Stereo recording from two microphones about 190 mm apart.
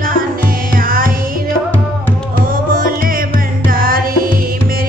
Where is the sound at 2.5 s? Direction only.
45° right (ahead or behind).